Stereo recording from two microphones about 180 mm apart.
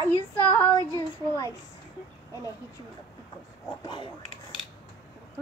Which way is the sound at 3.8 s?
25° left (ahead or behind).